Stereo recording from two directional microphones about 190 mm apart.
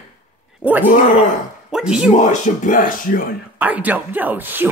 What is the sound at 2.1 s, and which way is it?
Speech, 40° left (ahead or behind).